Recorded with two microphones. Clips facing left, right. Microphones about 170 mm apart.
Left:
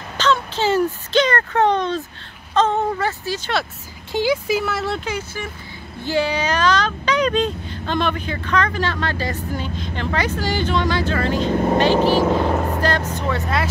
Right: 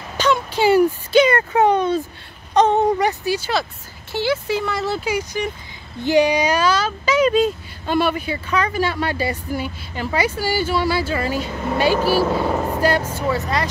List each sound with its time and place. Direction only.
0.2 s speech: 10° right (ahead or behind)
4.1 s speech: 15° left (ahead or behind); by 11.5 s 10° right (ahead or behind)
11.5 s speech: 40° left (ahead or behind)
12.4 s speech: 5° right (ahead or behind)